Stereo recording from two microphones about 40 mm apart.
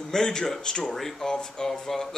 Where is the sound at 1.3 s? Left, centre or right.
Centre.